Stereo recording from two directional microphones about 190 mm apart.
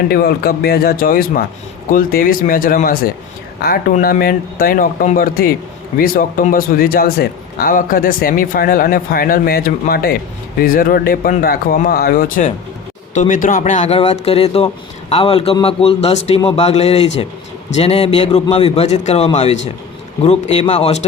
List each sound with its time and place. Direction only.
0.1 s a man's voice: 55° left (ahead or behind); by 21.0 s 35° left (ahead or behind)